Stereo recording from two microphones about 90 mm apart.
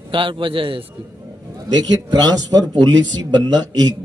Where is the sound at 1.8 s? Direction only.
50° right (ahead or behind).